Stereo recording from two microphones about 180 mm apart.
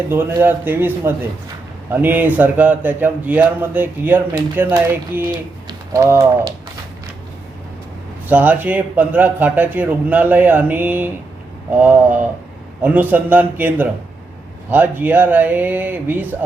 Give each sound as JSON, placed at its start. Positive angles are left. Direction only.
{"t": 0.1, "sound": "speech", "side_deg": -10}
{"t": 8.3, "sound": "speech", "side_deg": -10}